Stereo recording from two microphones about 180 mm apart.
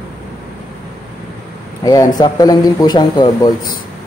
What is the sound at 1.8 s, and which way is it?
Speech, 20° left (ahead or behind).